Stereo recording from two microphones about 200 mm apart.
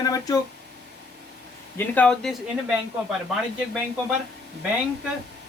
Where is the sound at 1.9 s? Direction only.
5° left (ahead or behind).